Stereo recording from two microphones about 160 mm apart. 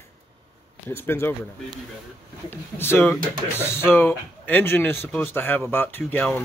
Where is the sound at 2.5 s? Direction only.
15° left (ahead or behind).